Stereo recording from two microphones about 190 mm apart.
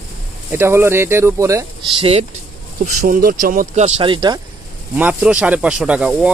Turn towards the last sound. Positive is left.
turn(degrees=-5)  # may be behind; listen again after turning